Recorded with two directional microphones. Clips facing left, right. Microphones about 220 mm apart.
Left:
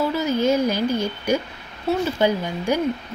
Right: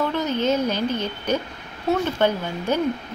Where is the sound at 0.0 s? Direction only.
10° left (ahead or behind).